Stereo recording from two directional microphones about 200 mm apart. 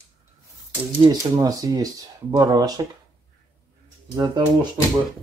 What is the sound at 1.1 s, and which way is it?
Speech, 20° right (ahead or behind).